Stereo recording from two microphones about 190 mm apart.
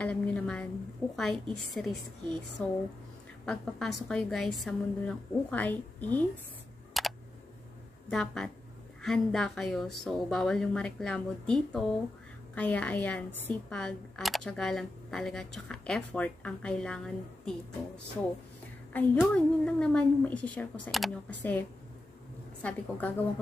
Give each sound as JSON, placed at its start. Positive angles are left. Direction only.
{"t": 0.0, "sound": "a woman's voice", "side_deg": 5}
{"t": 6.9, "sound": "computer keyboard", "side_deg": 0}
{"t": 8.1, "sound": "a woman's voice", "side_deg": 5}
{"t": 19.1, "sound": "speech", "side_deg": 5}
{"t": 22.6, "sound": "a woman's voice", "side_deg": 5}